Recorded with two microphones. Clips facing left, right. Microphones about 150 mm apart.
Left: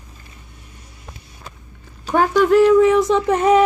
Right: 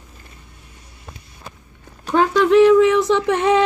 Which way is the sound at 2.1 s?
5° left (ahead or behind).